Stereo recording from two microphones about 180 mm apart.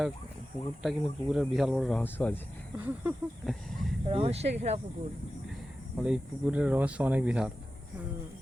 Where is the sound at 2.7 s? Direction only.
10° right (ahead or behind).